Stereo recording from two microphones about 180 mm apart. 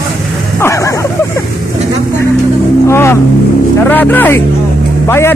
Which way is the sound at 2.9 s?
15° left (ahead or behind).